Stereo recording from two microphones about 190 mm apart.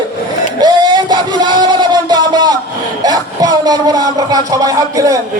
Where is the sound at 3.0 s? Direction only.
20° right (ahead or behind).